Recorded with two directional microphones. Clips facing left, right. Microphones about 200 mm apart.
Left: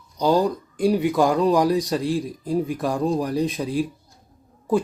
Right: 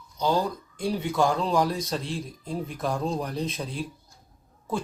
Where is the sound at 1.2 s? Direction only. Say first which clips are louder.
Left 3 dB; 15° left (ahead or behind).